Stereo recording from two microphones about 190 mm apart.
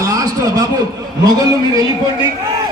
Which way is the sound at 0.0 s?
20° right (ahead or behind).